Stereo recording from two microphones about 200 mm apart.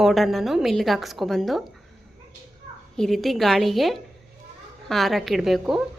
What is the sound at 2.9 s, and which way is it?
A woman's voice, centre (ahead or behind).